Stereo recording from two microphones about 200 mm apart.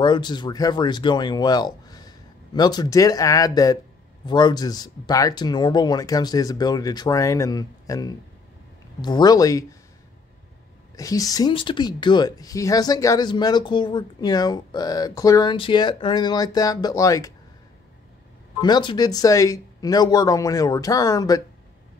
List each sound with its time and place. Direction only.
0.0 s speech: 20° left (ahead or behind)
11.0 s speech: 15° left (ahead or behind)
18.6 s speech: 20° left (ahead or behind)